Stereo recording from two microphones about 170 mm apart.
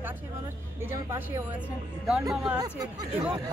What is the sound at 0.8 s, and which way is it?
Speech, 15° right (ahead or behind).